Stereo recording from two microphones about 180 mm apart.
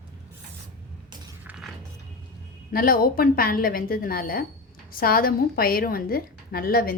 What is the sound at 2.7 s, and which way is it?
A woman's voice, 55° left (ahead or behind).